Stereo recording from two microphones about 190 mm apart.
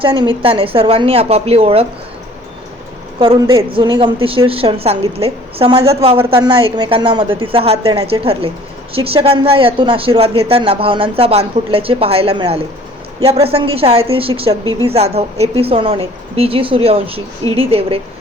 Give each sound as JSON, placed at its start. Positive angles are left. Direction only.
{"t": 0.0, "sound": "speech", "side_deg": -25}
{"t": 3.2, "sound": "a woman's voice", "side_deg": -25}
{"t": 3.4, "sound": "a woman's voice", "side_deg": -15}
{"t": 14.6, "sound": "a woman's voice", "side_deg": 20}
{"t": 14.8, "sound": "speech", "side_deg": -35}